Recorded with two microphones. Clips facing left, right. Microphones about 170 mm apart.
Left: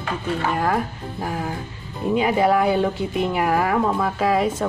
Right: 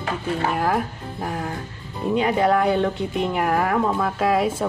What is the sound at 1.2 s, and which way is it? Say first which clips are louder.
A woman's voice: left 1 dB; 5° left (ahead or behind).